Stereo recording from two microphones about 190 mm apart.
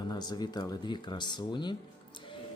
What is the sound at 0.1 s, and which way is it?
A man's voice, 20° left (ahead or behind).